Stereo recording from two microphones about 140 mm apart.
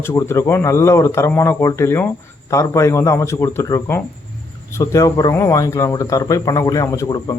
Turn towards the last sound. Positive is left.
turn(degrees=25)  # may be behind; listen again after turning